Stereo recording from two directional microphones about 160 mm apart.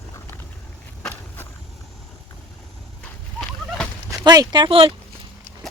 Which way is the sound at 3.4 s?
5° left (ahead or behind).